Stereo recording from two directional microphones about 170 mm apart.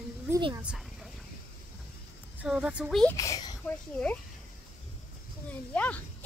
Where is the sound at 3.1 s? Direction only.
20° left (ahead or behind).